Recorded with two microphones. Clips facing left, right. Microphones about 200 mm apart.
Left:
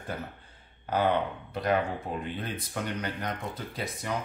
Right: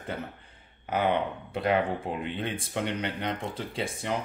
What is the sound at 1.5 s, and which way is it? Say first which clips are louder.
Speech: right 2 dB; 30° right (ahead or behind).